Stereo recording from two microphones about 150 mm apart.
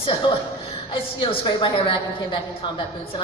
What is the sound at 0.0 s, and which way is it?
A woman's voice, 30° left (ahead or behind).